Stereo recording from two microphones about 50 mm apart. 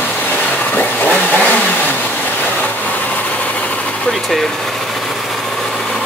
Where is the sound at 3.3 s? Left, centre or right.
Left.